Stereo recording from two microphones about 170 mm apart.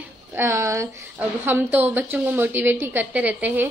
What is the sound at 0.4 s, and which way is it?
A woman's voice, 15° right (ahead or behind).